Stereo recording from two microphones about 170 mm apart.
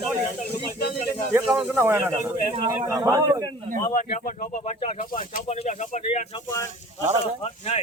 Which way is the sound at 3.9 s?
50° left (ahead or behind).